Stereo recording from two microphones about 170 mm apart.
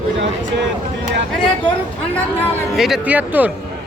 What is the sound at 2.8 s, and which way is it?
Speech, centre (ahead or behind).